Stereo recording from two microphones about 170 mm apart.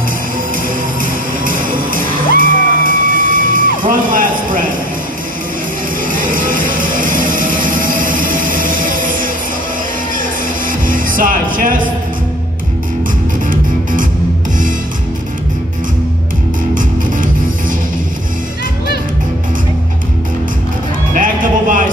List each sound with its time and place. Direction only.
1.4 s music: 55° right (ahead or behind)
6.0 s music: 50° right (ahead or behind)
10.7 s music: 50° right (ahead or behind)
21.1 s music: 50° right (ahead or behind)